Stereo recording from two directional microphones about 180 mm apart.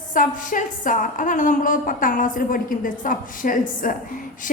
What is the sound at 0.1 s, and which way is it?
A woman's voice, 50° left (ahead or behind).